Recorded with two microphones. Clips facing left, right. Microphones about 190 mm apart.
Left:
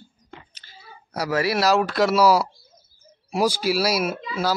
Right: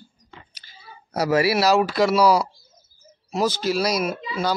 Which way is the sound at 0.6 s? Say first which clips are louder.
Left 3 dB; 15° right (ahead or behind).